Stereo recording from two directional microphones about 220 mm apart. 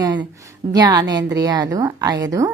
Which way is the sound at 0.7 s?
20° right (ahead or behind).